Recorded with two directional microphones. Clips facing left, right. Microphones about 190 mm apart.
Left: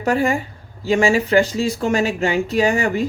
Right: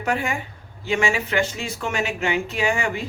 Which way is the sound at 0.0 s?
35° left (ahead or behind).